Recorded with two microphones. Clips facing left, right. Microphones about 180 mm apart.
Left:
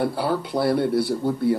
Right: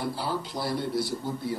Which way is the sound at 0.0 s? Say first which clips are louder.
Left 7 dB; 60° left (ahead or behind).